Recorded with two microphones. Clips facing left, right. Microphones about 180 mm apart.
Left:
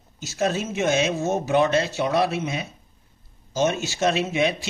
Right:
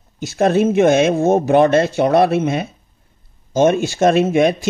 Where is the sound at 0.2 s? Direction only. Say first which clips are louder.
Right 10 dB; 55° right (ahead or behind).